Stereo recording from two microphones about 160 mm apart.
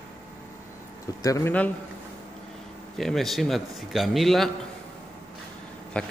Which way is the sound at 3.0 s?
Centre (ahead or behind).